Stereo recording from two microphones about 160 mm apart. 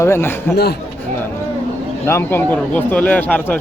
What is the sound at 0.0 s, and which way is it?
Speech, 15° left (ahead or behind).